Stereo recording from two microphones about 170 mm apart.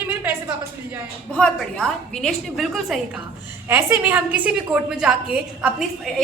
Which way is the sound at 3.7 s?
15° right (ahead or behind).